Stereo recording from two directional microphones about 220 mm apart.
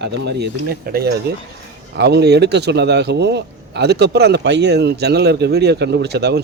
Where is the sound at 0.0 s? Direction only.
50° right (ahead or behind).